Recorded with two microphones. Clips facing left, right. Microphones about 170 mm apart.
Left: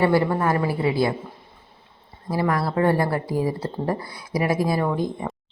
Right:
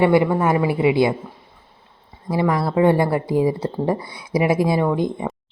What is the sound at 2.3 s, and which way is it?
Speech, 20° right (ahead or behind).